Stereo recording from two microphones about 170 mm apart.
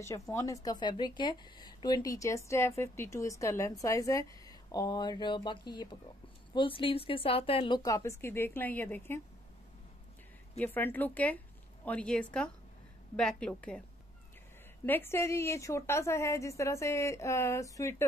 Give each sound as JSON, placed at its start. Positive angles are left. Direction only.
{"t": 0.0, "sound": "a woman's voice", "side_deg": 15}
{"t": 10.6, "sound": "a woman's voice", "side_deg": 10}
{"t": 14.9, "sound": "a woman's voice", "side_deg": 15}